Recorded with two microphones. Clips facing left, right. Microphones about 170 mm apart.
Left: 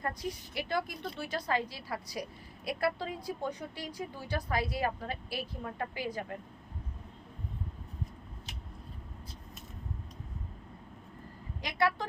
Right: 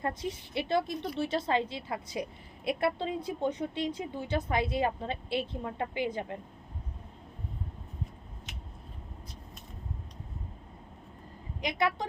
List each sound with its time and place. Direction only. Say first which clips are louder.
0.0 s a woman's voice: right 3 dB; 25° right (ahead or behind)
11.6 s a woman's voice: right 1 dB; 20° right (ahead or behind)